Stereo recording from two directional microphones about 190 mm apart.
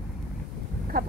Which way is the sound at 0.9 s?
50° right (ahead or behind).